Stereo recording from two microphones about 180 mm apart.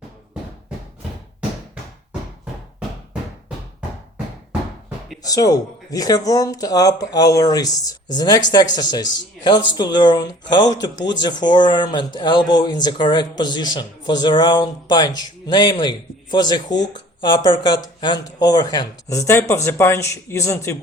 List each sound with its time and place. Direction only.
5.2 s speech: 20° left (ahead or behind)